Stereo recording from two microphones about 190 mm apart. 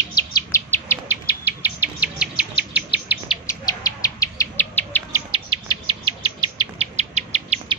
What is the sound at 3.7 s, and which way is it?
Bird, 20° left (ahead or behind).